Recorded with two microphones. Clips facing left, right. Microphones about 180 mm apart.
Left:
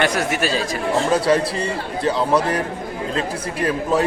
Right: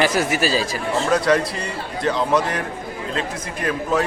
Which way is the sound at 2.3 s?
35° left (ahead or behind).